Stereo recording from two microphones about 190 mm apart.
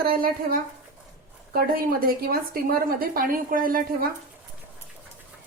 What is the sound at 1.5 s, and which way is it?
A woman's voice, 50° right (ahead or behind).